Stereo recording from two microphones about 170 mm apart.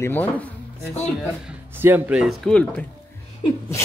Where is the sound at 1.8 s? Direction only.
10° right (ahead or behind).